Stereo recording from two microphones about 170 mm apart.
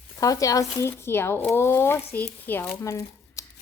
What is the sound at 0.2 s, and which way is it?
Speech, 20° left (ahead or behind).